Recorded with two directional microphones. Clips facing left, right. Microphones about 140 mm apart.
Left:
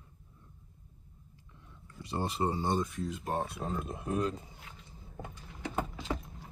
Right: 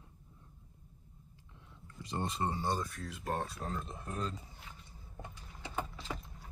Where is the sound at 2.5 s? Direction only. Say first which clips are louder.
Left 4 dB; 20° left (ahead or behind).